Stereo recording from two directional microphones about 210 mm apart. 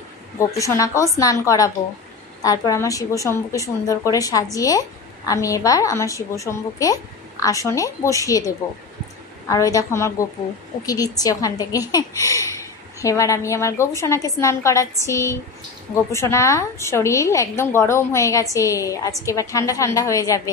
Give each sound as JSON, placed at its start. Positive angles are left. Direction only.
{"t": 0.6, "sound": "a woman's voice", "side_deg": 15}